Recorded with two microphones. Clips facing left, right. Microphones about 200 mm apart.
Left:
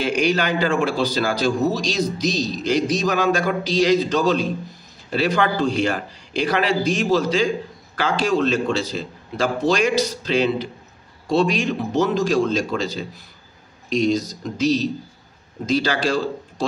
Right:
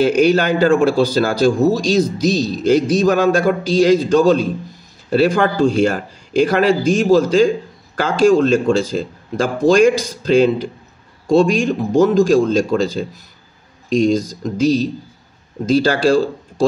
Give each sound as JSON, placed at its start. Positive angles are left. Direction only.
{"t": 0.0, "sound": "a man's voice", "side_deg": -45}